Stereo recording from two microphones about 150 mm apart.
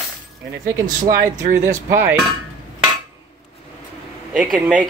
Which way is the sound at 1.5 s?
15° right (ahead or behind).